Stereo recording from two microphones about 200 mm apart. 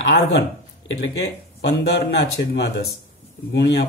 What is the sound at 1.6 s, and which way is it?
Speech, 60° left (ahead or behind).